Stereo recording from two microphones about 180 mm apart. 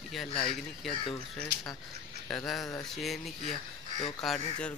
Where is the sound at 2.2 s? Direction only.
5° left (ahead or behind).